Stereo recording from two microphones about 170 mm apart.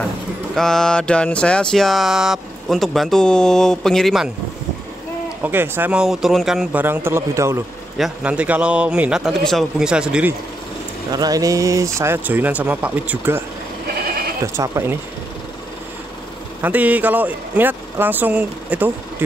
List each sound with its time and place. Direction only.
0.6 s a sound: 5° left (ahead or behind)
5.4 s speech: 10° right (ahead or behind)
8.0 s a sound: 5° right (ahead or behind)
11.1 s speech: 25° right (ahead or behind)
14.4 s speech: 15° right (ahead or behind)
16.6 s speech: 10° right (ahead or behind)